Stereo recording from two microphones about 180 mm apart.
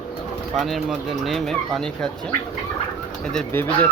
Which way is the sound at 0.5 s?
Centre (ahead or behind).